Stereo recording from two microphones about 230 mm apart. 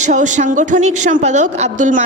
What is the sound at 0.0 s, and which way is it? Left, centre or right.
A man's voice, right.